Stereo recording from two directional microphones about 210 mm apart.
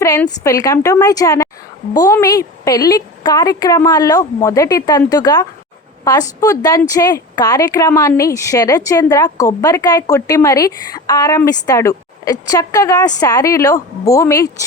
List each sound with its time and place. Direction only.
0.0 s a woman's voice: 15° left (ahead or behind)